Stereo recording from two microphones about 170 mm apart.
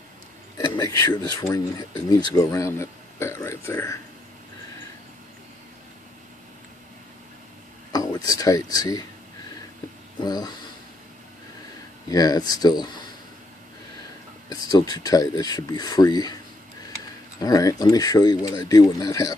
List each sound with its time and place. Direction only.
0.7 s speech: 20° left (ahead or behind)
7.9 s speech: 20° left (ahead or behind)
10.2 s speech: 25° left (ahead or behind)
12.1 s speech: 20° left (ahead or behind)
14.5 s speech: 25° left (ahead or behind)
17.4 s speech: 20° left (ahead or behind)